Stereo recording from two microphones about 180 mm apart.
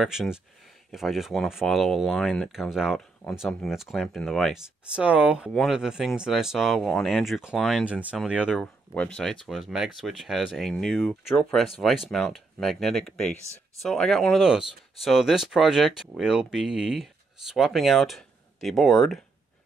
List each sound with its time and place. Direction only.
0.0 s speech: centre (ahead or behind)
8.5 s speech: 5° left (ahead or behind)